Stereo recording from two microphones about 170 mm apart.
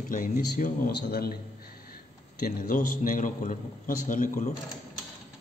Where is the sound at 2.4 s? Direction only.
55° left (ahead or behind).